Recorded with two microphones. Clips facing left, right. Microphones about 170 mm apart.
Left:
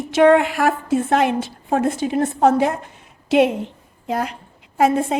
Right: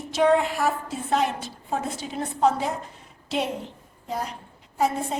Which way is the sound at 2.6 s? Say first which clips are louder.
Left 9 dB; 80° left.